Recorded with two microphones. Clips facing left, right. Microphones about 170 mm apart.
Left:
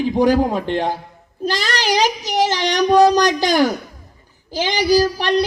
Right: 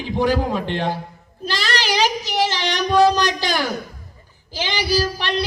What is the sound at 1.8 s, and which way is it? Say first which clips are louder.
Child singing: left 2 dB; 45° left (ahead or behind).